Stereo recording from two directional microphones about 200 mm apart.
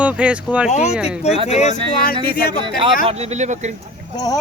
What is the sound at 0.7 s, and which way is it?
Speech, 35° left (ahead or behind).